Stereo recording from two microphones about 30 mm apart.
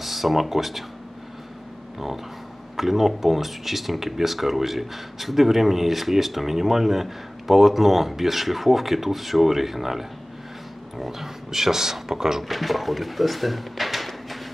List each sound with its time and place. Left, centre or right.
0.0 s speech: centre
2.8 s speech: centre
11.1 s speech: centre
12.4 s speech: centre